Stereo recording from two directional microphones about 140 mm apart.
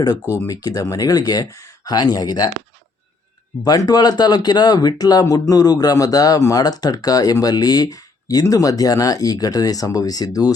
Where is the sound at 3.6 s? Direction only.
25° left (ahead or behind).